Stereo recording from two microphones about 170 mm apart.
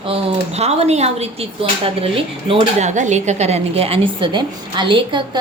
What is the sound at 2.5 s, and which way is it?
Speech, 40° right (ahead or behind).